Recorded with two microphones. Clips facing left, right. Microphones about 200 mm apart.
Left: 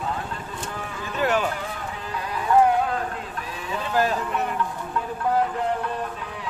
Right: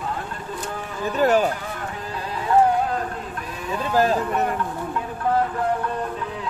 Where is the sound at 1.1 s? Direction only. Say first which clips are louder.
Right 5 dB; 40° right (ahead or behind).